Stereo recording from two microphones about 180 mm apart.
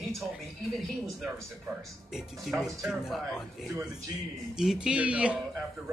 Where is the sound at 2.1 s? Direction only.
Centre (ahead or behind).